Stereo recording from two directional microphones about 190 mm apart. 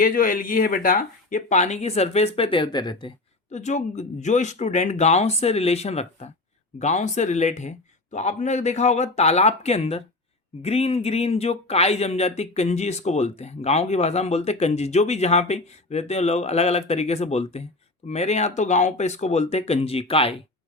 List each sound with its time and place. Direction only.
0.0 s speech: 45° left (ahead or behind); by 3.1 s 25° left (ahead or behind)
3.5 s speech: 40° left (ahead or behind)